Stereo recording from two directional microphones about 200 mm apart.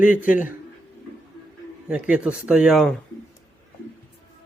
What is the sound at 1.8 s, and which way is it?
Speech, 5° right (ahead or behind).